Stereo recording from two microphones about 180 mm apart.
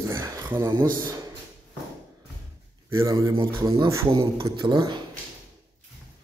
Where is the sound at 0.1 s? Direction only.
15° right (ahead or behind).